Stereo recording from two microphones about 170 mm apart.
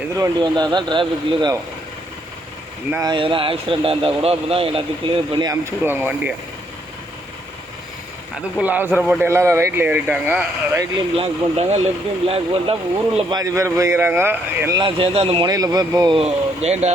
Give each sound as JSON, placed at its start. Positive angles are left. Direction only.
{"t": 0.2, "sound": "speech", "side_deg": -25}
{"t": 3.0, "sound": "speech", "side_deg": -30}
{"t": 5.8, "sound": "speech", "side_deg": -10}
{"t": 8.4, "sound": "speech", "side_deg": -5}
{"t": 11.1, "sound": "speech", "side_deg": -35}
{"t": 13.3, "sound": "speech", "side_deg": -20}
{"t": 14.8, "sound": "speech", "side_deg": -30}
{"t": 16.2, "sound": "speech", "side_deg": -40}